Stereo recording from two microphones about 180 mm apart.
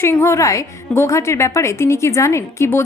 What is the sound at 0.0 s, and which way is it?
A woman's voice, 15° left (ahead or behind).